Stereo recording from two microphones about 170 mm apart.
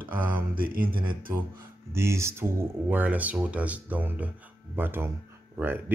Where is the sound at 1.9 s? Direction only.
15° right (ahead or behind).